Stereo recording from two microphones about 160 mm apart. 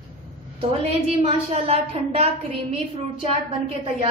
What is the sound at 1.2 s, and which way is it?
A woman's voice, 40° right (ahead or behind).